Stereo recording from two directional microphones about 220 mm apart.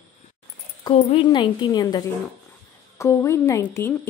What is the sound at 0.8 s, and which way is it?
A woman's voice, 20° left (ahead or behind).